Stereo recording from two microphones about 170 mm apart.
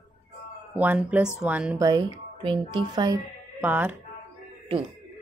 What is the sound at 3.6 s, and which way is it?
Speech, 10° right (ahead or behind).